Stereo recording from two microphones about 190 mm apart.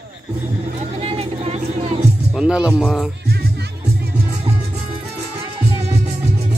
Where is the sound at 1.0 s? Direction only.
30° right (ahead or behind).